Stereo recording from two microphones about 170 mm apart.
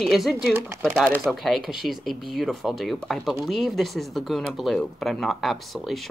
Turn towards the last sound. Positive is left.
turn(degrees=0)  # may be behind; listen again after turning